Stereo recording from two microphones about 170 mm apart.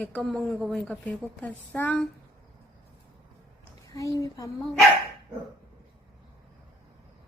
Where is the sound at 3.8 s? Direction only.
20° left (ahead or behind).